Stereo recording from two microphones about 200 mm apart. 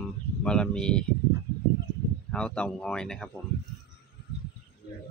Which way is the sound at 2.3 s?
5° left (ahead or behind).